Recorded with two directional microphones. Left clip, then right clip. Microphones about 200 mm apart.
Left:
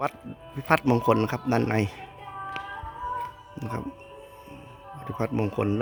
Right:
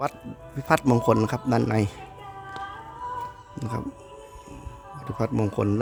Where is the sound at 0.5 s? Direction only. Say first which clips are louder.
Right 1 dB; centre (ahead or behind).